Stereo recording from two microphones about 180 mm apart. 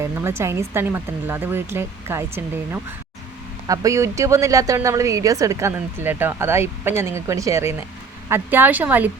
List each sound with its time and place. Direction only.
0.0 s speech: 15° right (ahead or behind)